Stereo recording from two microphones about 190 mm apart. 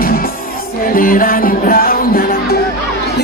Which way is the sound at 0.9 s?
50° left (ahead or behind).